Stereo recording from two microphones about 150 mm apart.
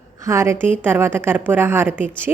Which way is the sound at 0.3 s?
20° right (ahead or behind).